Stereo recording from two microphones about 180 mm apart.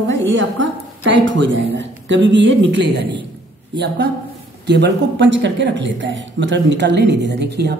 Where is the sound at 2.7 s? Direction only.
70° right (ahead or behind).